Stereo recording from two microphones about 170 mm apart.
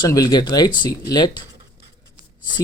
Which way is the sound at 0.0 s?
25° left (ahead or behind).